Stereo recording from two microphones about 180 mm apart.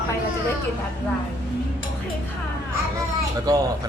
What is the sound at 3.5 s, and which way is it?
Speech, 20° right (ahead or behind).